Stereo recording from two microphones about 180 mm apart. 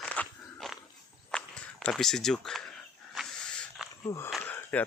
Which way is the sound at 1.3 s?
5° left (ahead or behind).